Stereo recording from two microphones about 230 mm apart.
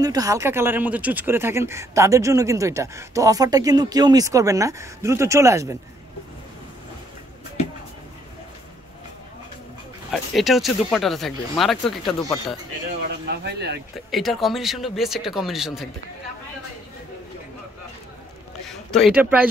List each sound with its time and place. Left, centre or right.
0.0 s speech: centre
10.1 s speech: centre
13.3 s speech: right
14.1 s speech: centre
18.7 s a man's voice: centre